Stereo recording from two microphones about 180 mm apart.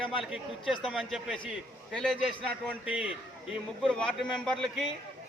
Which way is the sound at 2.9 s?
5° right (ahead or behind).